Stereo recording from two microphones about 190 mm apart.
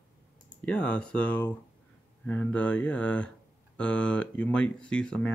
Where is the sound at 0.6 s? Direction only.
5° left (ahead or behind).